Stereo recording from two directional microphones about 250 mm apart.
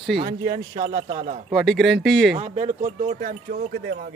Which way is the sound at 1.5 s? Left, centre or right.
Centre.